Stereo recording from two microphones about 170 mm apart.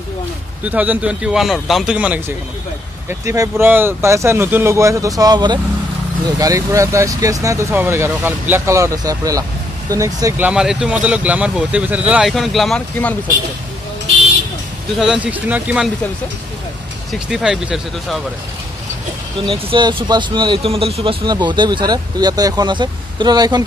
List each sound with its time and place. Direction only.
0.7 s speech: 10° right (ahead or behind)
15.0 s speech: 5° right (ahead or behind)
17.1 s speech: 5° right (ahead or behind)
19.4 s speech: 30° right (ahead or behind)